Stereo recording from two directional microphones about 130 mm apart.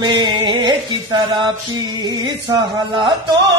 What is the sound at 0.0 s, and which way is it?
Music, 35° right (ahead or behind).